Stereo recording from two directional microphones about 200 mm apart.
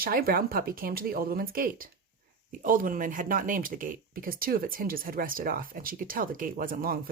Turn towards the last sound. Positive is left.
turn(degrees=-45)  # may be behind; listen again after turning